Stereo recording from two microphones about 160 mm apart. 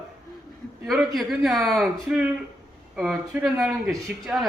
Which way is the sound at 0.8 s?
Centre (ahead or behind).